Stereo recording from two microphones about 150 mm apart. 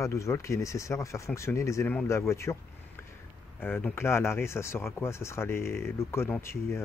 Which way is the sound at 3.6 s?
15° left (ahead or behind).